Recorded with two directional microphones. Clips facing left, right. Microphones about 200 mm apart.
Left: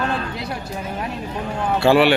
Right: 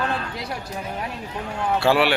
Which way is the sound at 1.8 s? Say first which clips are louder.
Left 5 dB; 5° right (ahead or behind).